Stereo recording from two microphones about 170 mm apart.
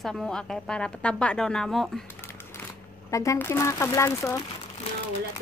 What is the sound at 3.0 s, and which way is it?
Speech, 20° left (ahead or behind).